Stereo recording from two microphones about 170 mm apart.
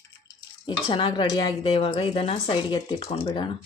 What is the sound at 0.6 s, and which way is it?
A woman's voice, 30° left (ahead or behind).